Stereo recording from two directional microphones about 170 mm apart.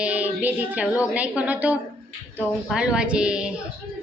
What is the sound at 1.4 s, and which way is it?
A woman's voice, 10° right (ahead or behind).